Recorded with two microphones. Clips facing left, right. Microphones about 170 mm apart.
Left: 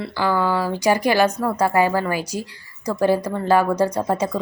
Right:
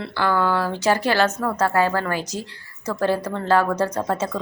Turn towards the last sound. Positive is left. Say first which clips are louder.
# left 2 dB
turn(degrees=10)  # may be behind; listen again after turning